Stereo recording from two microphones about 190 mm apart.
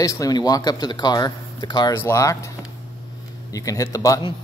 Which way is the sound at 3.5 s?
15° left (ahead or behind).